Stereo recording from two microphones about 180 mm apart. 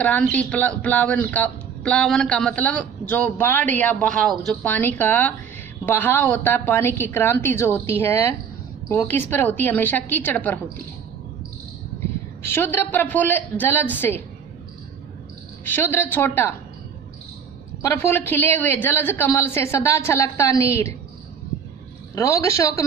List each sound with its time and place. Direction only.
0.0 s speech: 10° left (ahead or behind)
12.4 s speech: 15° left (ahead or behind)
15.6 s speech: 10° left (ahead or behind)
17.8 s speech: 10° left (ahead or behind)
22.1 s speech: 15° left (ahead or behind)